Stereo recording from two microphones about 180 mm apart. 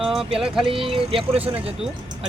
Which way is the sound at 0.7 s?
30° right (ahead or behind).